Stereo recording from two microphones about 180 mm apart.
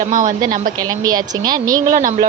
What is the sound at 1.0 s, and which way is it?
Speech, 20° right (ahead or behind).